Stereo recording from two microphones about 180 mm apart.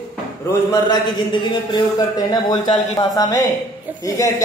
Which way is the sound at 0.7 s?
20° left (ahead or behind).